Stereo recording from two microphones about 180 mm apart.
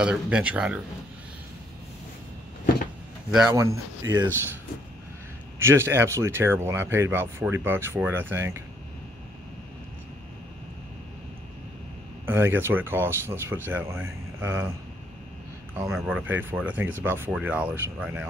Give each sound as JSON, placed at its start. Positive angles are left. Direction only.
{"t": 0.0, "sound": "speech", "side_deg": -5}
{"t": 3.4, "sound": "speech", "side_deg": -15}
{"t": 5.6, "sound": "speech", "side_deg": -15}
{"t": 12.3, "sound": "speech", "side_deg": -10}
{"t": 15.7, "sound": "speech", "side_deg": -15}